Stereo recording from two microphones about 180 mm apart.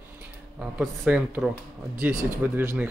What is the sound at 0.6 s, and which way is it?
Speech, 5° right (ahead or behind).